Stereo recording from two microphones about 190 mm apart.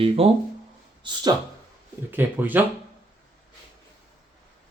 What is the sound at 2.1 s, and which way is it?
Speech, 10° right (ahead or behind).